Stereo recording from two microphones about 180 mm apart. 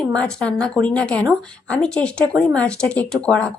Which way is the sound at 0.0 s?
5° left (ahead or behind).